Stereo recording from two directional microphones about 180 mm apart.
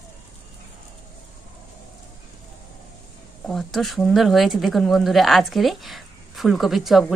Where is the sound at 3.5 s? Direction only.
Centre (ahead or behind).